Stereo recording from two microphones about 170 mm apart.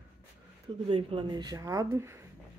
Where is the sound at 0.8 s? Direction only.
30° right (ahead or behind); by 2.2 s 15° right (ahead or behind).